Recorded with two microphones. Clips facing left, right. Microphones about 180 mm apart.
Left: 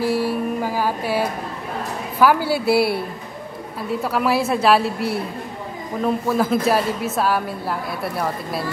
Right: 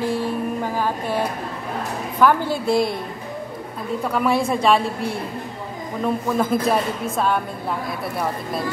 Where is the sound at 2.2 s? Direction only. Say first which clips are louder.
Left 1 dB; 5° left (ahead or behind).